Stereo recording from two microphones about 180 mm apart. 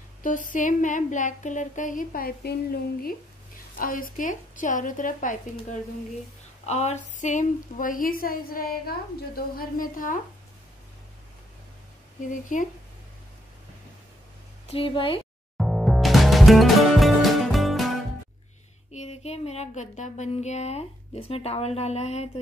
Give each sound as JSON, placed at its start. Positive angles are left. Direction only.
{"t": 0.2, "sound": "speech", "side_deg": 45}
{"t": 12.5, "sound": "speech", "side_deg": 45}
{"t": 14.7, "sound": "speech", "side_deg": 30}
{"t": 15.5, "sound": "music", "side_deg": 0}
{"t": 18.9, "sound": "speech", "side_deg": 40}